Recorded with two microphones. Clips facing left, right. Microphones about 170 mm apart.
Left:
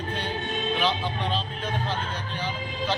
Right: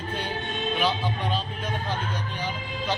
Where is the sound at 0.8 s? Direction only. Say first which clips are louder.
Even; 10° right (ahead or behind).